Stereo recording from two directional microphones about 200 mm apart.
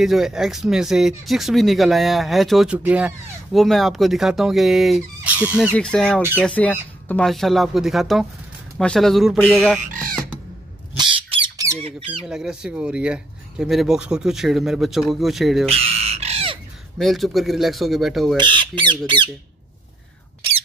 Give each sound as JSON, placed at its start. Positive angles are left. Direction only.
{"t": 0.0, "sound": "speech", "side_deg": 0}
{"t": 11.0, "sound": "squawk", "side_deg": -25}
{"t": 11.8, "sound": "speech", "side_deg": -25}
{"t": 12.3, "sound": "speech", "side_deg": -5}
{"t": 15.7, "sound": "crow", "side_deg": -30}
{"t": 17.0, "sound": "speech", "side_deg": 0}
{"t": 18.3, "sound": "speech", "side_deg": -25}